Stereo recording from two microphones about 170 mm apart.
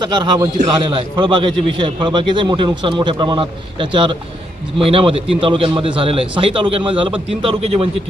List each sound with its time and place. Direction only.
0.2 s a man's voice: 30° right (ahead or behind)